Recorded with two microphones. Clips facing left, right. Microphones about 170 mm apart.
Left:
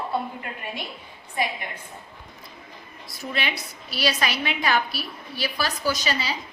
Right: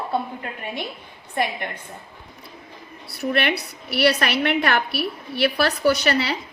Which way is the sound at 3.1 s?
65° right (ahead or behind).